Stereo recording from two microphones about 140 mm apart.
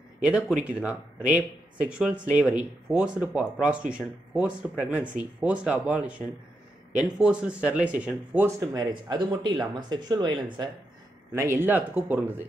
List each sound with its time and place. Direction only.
0.2 s speech: 10° right (ahead or behind); by 10.7 s 30° right (ahead or behind)
11.3 s speech: 20° right (ahead or behind)